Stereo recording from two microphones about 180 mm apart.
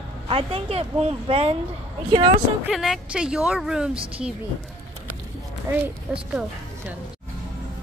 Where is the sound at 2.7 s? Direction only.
Centre (ahead or behind).